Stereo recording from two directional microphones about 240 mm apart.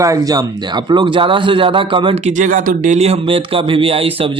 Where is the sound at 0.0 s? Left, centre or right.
Centre.